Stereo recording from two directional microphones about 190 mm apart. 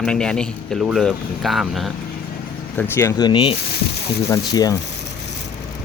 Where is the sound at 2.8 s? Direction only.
15° left (ahead or behind).